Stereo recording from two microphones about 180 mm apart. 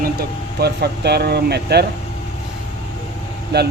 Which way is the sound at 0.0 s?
60° right (ahead or behind).